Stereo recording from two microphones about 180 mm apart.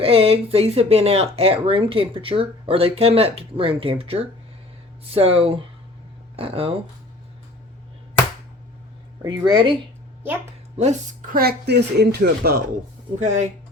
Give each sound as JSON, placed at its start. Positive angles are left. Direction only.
{"t": 0.0, "sound": "speech", "side_deg": -30}
{"t": 9.2, "sound": "speech", "side_deg": -25}
{"t": 10.8, "sound": "speech", "side_deg": -45}
{"t": 13.1, "sound": "speech", "side_deg": -40}